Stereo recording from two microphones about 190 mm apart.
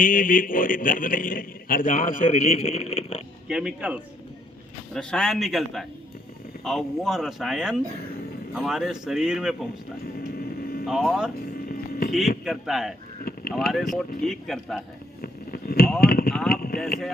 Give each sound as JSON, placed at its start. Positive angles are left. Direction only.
{"t": 0.0, "sound": "a man's voice", "side_deg": 45}
{"t": 3.5, "sound": "speech", "side_deg": -5}
{"t": 10.3, "sound": "vehicle", "side_deg": 50}
{"t": 10.8, "sound": "speech", "side_deg": 0}
{"t": 11.7, "sound": "a sound", "side_deg": 50}
{"t": 12.5, "sound": "speech", "side_deg": 0}
{"t": 15.2, "sound": "a sound", "side_deg": 50}
{"t": 16.0, "sound": "speech", "side_deg": 55}
{"t": 16.5, "sound": "a sound", "side_deg": 50}